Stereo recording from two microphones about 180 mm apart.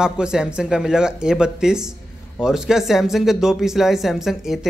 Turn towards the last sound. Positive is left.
turn(degrees=0)  # may be behind; listen again after turning